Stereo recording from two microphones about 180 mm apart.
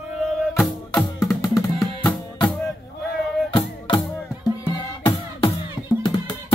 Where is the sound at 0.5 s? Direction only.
Centre (ahead or behind).